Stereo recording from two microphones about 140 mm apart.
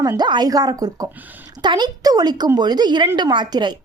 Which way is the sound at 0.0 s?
30° right (ahead or behind).